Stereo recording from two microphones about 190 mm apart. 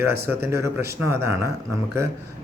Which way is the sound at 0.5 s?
15° right (ahead or behind).